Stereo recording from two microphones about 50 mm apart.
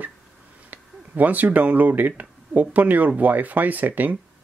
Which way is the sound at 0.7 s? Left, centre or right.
Right.